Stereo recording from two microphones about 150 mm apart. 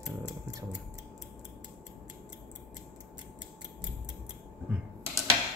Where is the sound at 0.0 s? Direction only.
25° right (ahead or behind).